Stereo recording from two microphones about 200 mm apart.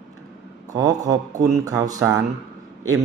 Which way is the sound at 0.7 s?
20° right (ahead or behind).